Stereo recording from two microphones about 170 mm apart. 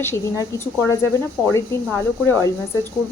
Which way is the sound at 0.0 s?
15° left (ahead or behind).